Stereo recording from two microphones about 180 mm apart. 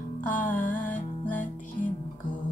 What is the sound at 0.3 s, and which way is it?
Music, 50° left (ahead or behind).